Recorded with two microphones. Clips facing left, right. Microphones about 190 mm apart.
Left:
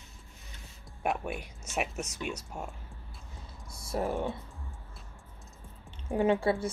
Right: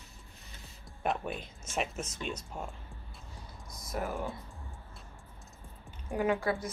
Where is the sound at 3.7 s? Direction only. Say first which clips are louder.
Left 4 dB; 30° left (ahead or behind).